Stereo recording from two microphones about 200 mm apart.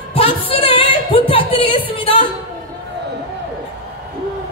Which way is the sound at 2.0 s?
30° left (ahead or behind).